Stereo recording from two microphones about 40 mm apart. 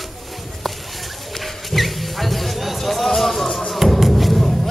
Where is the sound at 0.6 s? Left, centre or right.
Centre.